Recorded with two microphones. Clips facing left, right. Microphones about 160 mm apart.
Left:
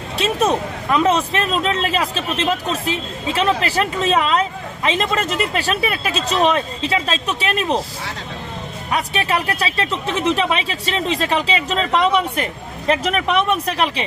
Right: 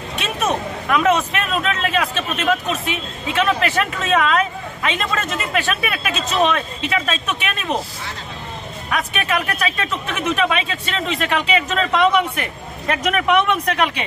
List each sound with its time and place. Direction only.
0.2 s speech: 30° left (ahead or behind)
8.9 s speech: 35° left (ahead or behind)